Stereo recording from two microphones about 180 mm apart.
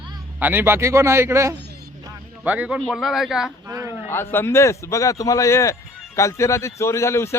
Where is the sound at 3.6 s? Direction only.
15° right (ahead or behind).